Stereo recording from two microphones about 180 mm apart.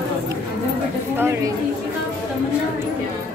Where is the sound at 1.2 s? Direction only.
15° right (ahead or behind).